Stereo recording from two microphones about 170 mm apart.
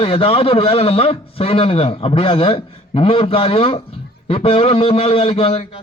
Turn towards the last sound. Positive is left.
turn(degrees=30)  # may be behind; listen again after turning